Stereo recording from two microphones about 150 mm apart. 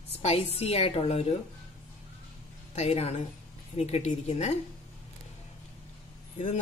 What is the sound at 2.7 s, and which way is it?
Speech, 45° left (ahead or behind).